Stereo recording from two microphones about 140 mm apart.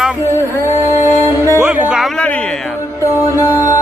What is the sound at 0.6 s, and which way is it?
Music, 20° left (ahead or behind).